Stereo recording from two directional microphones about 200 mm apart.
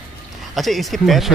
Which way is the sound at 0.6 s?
Centre (ahead or behind).